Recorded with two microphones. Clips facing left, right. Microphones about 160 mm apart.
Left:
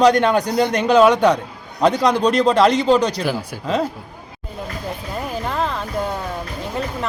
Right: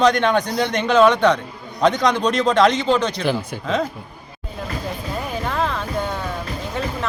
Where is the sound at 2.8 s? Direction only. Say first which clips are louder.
Left 3 dB; 5° left (ahead or behind).